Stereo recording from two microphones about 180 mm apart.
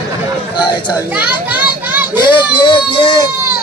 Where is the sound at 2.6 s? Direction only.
25° left (ahead or behind).